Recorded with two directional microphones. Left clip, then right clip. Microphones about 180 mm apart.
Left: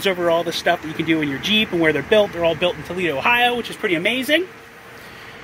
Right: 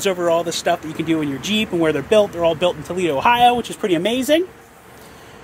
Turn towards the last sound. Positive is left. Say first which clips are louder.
# right 1 dB
turn(degrees=-40)  # may be behind; listen again after turning